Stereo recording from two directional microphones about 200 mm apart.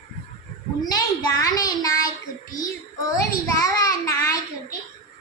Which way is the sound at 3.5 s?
15° left (ahead or behind).